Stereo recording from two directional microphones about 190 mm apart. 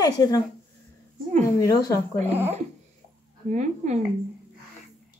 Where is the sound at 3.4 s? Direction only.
40° right (ahead or behind).